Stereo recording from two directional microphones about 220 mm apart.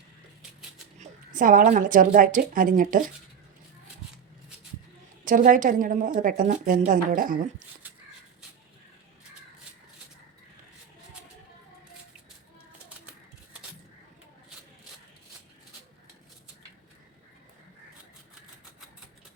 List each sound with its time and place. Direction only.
0.9 s a woman's voice: 35° right (ahead or behind)
5.2 s a woman's voice: 35° right (ahead or behind)
13.1 s a sound: 5° right (ahead or behind)